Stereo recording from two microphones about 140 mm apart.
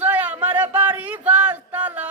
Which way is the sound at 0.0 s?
10° right (ahead or behind).